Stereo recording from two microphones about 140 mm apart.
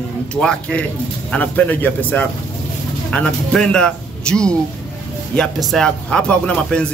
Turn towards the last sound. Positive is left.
turn(degrees=5)  # may be behind; listen again after turning